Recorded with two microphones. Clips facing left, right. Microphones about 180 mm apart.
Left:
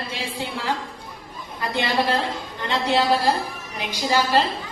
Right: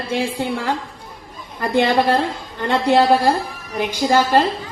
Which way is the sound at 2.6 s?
50° right (ahead or behind).